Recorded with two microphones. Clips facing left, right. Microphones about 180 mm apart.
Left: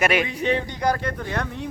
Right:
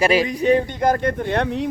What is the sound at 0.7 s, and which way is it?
Speech, 50° right (ahead or behind).